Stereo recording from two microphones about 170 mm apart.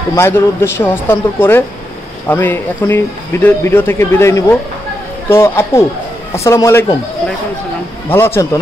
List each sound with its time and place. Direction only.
0.1 s speech: 15° left (ahead or behind)
8.1 s speech: 15° left (ahead or behind)